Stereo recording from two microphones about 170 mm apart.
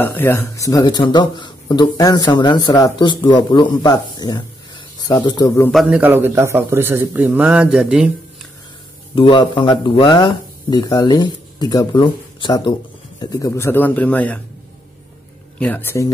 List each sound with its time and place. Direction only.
0.0 s speech: 10° left (ahead or behind)
5.7 s a man's voice: centre (ahead or behind)
9.1 s a man's voice: 30° left (ahead or behind); by 14.4 s 10° left (ahead or behind)
15.6 s a man's voice: 10° left (ahead or behind)